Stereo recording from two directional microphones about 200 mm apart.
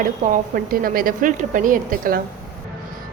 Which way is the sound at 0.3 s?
45° right (ahead or behind).